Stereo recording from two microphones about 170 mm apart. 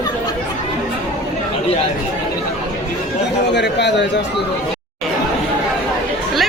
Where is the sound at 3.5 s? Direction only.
90° left.